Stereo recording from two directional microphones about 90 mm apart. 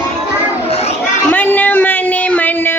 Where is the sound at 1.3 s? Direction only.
20° left (ahead or behind).